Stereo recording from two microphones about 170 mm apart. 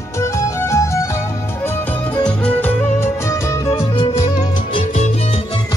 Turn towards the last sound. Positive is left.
turn(degrees=45)  # may be behind; listen again after turning